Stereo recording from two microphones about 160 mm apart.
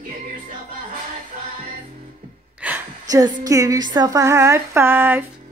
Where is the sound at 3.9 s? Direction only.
20° right (ahead or behind).